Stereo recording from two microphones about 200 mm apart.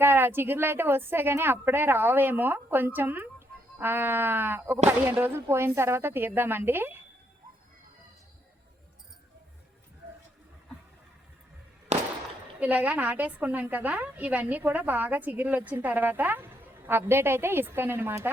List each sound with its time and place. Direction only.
0.0 s a woman's voice: 10° right (ahead or behind)
11.9 s a sound: 35° right (ahead or behind)
12.5 s a woman's voice: 10° right (ahead or behind)